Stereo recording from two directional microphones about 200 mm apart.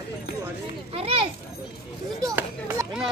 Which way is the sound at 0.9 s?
30° right (ahead or behind).